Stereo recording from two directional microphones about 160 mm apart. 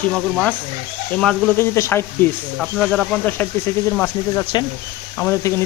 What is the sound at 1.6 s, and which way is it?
Speech, 15° left (ahead or behind).